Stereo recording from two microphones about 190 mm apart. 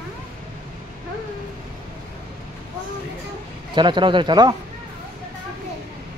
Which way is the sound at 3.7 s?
25° right (ahead or behind).